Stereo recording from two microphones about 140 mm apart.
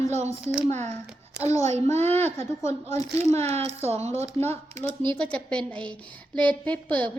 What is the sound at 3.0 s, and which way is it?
Speech, 50° right (ahead or behind).